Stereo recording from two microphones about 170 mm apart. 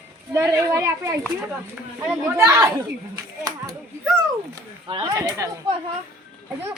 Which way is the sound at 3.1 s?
20° right (ahead or behind).